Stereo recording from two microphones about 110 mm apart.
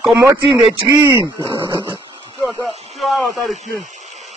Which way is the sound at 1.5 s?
50° right (ahead or behind).